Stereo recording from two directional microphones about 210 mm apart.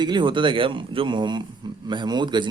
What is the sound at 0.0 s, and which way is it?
Speech, 20° right (ahead or behind).